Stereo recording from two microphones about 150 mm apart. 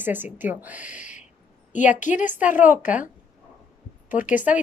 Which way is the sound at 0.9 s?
55° left (ahead or behind).